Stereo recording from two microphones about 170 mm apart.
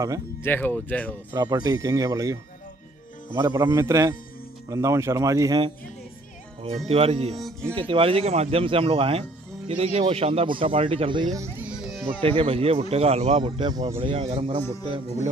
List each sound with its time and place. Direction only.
0.4 s speech: 10° left (ahead or behind)
1.3 s speech: 20° right (ahead or behind)
3.4 s speech: 15° right (ahead or behind)
6.9 s speech: 35° right (ahead or behind); by 11.7 s 15° right (ahead or behind)
11.7 s music: centre (ahead or behind)
12.2 s speech: 30° right (ahead or behind)
13.4 s speech: 25° right (ahead or behind)
13.9 s speech: 35° right (ahead or behind)